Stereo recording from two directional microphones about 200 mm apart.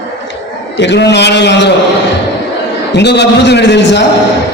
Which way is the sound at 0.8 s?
60° left (ahead or behind).